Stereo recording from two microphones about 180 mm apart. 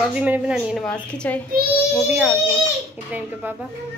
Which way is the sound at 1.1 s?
5° left (ahead or behind).